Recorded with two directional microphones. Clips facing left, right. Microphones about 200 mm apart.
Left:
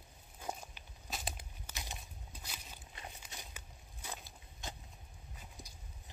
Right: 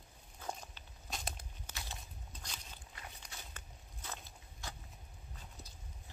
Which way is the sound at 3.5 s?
10° left (ahead or behind).